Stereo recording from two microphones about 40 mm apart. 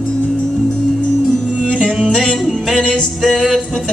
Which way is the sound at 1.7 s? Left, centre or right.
Right.